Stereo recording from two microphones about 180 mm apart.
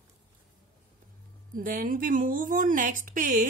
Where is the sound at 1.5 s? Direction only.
50° right (ahead or behind).